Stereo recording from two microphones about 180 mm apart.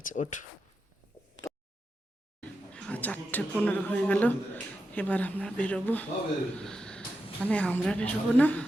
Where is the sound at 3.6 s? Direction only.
10° left (ahead or behind).